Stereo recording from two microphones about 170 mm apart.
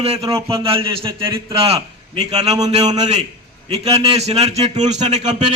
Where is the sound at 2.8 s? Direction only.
25° right (ahead or behind).